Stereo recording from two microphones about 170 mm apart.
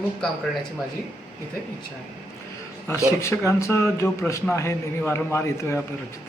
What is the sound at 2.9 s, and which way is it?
A man's voice, 15° left (ahead or behind).